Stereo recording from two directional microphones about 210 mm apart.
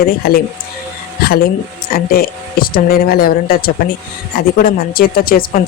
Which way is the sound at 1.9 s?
45° left (ahead or behind).